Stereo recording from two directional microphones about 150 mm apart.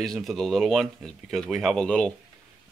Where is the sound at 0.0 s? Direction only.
Centre (ahead or behind).